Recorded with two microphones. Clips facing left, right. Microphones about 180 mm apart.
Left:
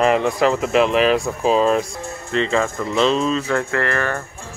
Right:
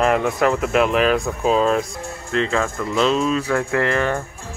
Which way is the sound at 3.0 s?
5° right (ahead or behind).